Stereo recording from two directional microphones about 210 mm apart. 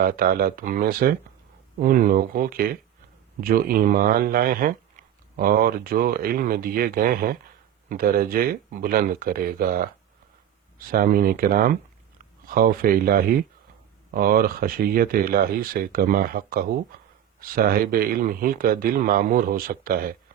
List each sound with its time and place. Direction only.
0.0 s speech: 45° right (ahead or behind)